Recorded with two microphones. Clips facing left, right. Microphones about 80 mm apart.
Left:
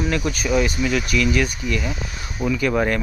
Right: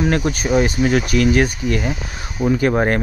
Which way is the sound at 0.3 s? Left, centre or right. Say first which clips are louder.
Right 3 dB; right.